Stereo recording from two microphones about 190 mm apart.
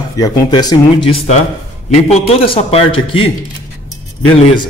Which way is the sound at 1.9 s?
35° left (ahead or behind).